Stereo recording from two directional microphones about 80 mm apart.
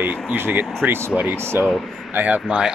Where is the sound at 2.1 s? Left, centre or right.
Centre.